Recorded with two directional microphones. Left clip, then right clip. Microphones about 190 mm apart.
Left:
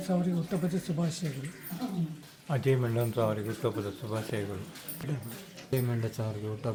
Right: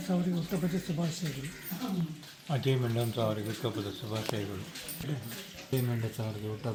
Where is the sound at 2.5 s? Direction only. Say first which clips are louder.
Left 3 dB; 5° left (ahead or behind).